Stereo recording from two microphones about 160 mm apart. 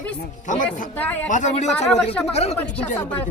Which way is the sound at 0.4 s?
50° left (ahead or behind).